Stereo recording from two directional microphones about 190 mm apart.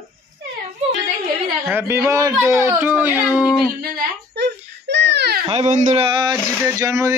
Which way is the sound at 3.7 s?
55° right (ahead or behind).